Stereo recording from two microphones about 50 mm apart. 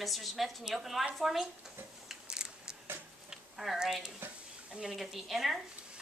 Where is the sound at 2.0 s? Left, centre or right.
Centre.